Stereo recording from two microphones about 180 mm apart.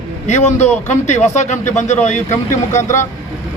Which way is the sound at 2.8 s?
15° left (ahead or behind).